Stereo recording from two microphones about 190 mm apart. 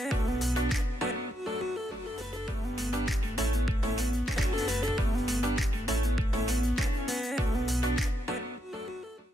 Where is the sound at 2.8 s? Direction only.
Centre (ahead or behind).